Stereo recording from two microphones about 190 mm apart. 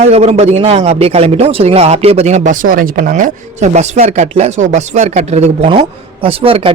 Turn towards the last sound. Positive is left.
turn(degrees=-30)  # may be behind; listen again after turning